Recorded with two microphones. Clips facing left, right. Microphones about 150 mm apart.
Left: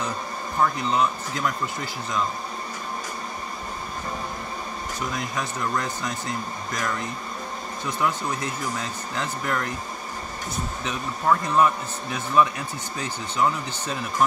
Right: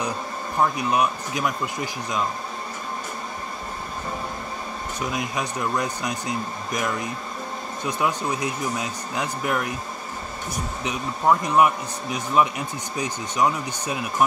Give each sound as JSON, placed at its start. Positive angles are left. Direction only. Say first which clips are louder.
{"t": 0.6, "sound": "speech", "louder": "right 1 dB", "side_deg": -15}
{"t": 5.1, "sound": "speech", "louder": "right 2 dB", "side_deg": -15}